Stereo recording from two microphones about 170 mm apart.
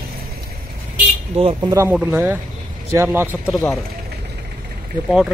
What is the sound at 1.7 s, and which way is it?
Speech, 15° right (ahead or behind).